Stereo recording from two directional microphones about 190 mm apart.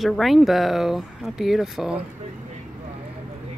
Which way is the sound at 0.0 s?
Centre (ahead or behind).